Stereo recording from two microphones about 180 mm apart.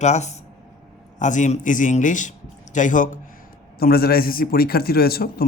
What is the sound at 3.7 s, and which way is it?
A man's voice, 55° left (ahead or behind).